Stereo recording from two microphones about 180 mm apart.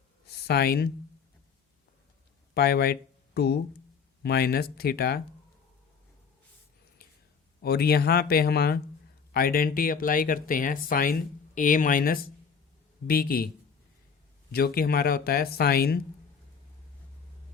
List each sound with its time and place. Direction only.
0.4 s speech: 60° left (ahead or behind)
2.6 s speech: 60° left (ahead or behind)
7.6 s speech: 60° left (ahead or behind)
14.5 s speech: 60° left (ahead or behind)